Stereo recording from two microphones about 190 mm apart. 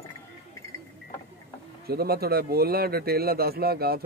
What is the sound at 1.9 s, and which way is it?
Speech, 55° right (ahead or behind).